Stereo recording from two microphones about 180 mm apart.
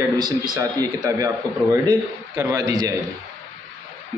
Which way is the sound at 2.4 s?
15° right (ahead or behind).